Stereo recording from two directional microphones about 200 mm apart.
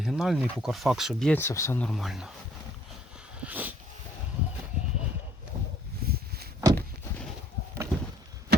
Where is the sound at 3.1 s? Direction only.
5° right (ahead or behind).